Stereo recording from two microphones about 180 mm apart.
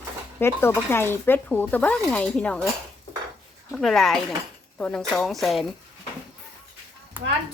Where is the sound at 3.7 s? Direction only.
Centre (ahead or behind).